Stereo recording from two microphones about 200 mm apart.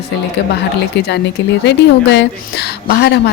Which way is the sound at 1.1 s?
60° left (ahead or behind).